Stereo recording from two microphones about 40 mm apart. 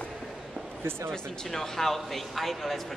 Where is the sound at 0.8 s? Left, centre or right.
Right.